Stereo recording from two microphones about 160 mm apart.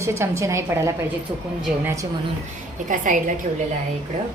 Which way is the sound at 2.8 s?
55° right (ahead or behind).